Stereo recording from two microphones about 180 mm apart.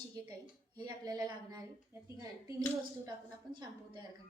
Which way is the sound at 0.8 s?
20° right (ahead or behind).